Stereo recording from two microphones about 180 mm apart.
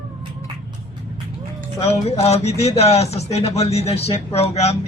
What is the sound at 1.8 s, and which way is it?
Speech, 35° left (ahead or behind).